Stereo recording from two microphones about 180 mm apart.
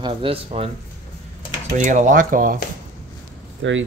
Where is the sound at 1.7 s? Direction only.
45° right (ahead or behind).